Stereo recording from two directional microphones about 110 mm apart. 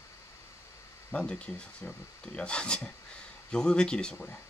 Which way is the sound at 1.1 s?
10° left (ahead or behind).